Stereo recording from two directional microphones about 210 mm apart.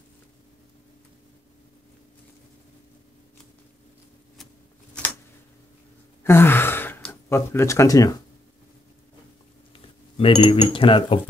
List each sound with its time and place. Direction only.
6.2 s gasp: 10° left (ahead or behind)
9.7 s speech: 25° left (ahead or behind)